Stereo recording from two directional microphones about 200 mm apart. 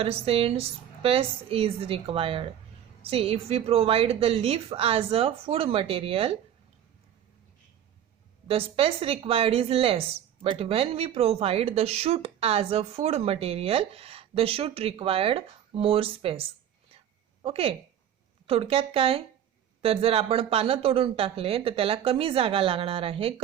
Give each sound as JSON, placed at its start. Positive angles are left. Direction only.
{"t": 0.0, "sound": "speech", "side_deg": -30}
{"t": 8.4, "sound": "speech", "side_deg": -30}